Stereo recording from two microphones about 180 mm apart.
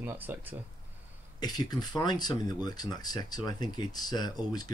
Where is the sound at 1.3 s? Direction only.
20° left (ahead or behind).